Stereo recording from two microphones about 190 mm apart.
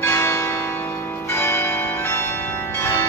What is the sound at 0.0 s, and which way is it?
Church bell, 15° left (ahead or behind).